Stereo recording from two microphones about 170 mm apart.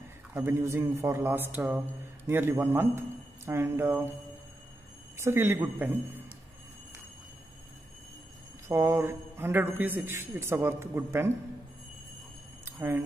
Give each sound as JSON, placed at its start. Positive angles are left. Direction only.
{"t": 0.3, "sound": "speech", "side_deg": -15}
{"t": 5.1, "sound": "speech", "side_deg": -15}
{"t": 8.6, "sound": "speech", "side_deg": -15}